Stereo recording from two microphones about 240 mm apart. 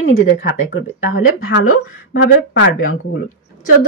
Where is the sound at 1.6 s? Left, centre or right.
Left.